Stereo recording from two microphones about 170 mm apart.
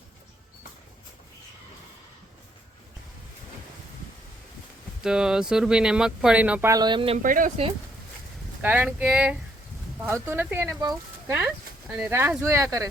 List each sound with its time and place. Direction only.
5.0 s speech: 5° right (ahead or behind); by 7.2 s 30° right (ahead or behind)
7.2 s speech: 50° right (ahead or behind)
8.6 s speech: 10° right (ahead or behind)